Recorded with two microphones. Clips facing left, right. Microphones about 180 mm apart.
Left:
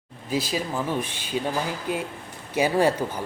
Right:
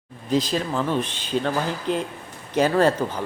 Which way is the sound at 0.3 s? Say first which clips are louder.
Right 4 dB; 10° left (ahead or behind).